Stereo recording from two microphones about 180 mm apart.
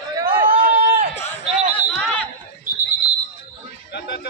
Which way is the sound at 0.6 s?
50° right (ahead or behind).